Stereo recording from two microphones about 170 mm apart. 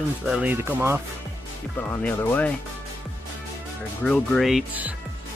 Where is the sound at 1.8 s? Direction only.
10° left (ahead or behind).